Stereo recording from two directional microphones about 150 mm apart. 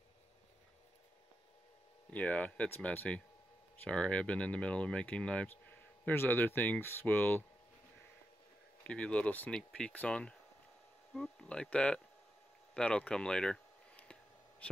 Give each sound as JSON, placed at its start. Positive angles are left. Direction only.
{"t": 2.1, "sound": "speech", "side_deg": 10}
{"t": 8.8, "sound": "speech", "side_deg": 10}
{"t": 12.7, "sound": "a sound", "side_deg": 5}